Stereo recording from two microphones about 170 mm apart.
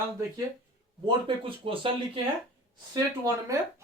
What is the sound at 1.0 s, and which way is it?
Speech, 30° right (ahead or behind).